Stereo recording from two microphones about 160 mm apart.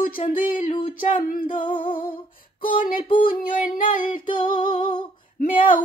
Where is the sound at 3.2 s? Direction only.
60° left (ahead or behind).